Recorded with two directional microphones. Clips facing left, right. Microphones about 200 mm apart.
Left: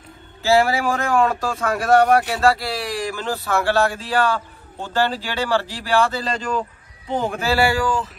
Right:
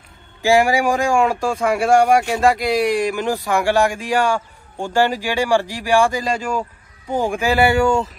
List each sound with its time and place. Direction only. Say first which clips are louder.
0.4 s speech: right 2 dB; 15° right (ahead or behind)